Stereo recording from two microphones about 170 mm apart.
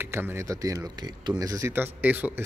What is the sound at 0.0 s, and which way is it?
Speech, 15° right (ahead or behind).